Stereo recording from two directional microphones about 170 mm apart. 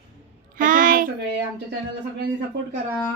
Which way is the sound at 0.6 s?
50° right (ahead or behind).